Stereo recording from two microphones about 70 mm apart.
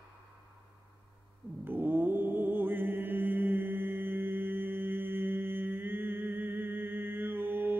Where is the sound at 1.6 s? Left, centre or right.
Right.